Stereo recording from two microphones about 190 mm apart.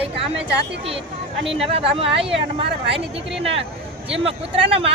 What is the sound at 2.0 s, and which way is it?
Speech, 30° right (ahead or behind).